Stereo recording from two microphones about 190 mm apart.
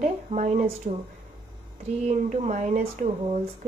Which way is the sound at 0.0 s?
40° right (ahead or behind).